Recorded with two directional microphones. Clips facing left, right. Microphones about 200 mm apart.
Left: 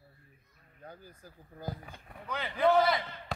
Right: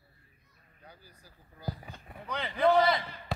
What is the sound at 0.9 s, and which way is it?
Speech, 50° left (ahead or behind).